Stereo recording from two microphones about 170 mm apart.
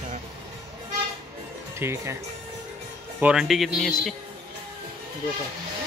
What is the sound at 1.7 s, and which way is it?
Speech, 15° right (ahead or behind).